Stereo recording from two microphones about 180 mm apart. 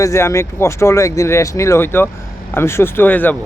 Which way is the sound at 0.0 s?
15° left (ahead or behind).